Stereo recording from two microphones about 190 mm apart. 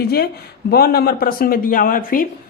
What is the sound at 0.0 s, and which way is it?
A woman's voice, 55° left (ahead or behind).